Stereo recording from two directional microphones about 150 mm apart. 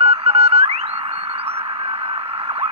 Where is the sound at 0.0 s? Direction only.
45° right (ahead or behind).